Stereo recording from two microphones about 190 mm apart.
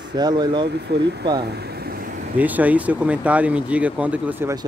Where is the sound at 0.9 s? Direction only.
60° right (ahead or behind).